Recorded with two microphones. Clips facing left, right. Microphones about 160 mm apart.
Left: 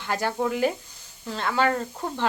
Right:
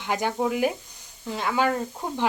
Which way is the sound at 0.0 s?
15° right (ahead or behind).